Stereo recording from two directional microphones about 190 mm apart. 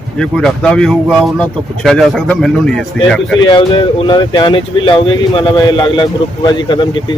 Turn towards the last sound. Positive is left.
turn(degrees=25)  # may be behind; listen again after turning